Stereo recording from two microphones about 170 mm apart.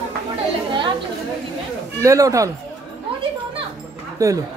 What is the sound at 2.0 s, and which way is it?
Speech, 20° right (ahead or behind).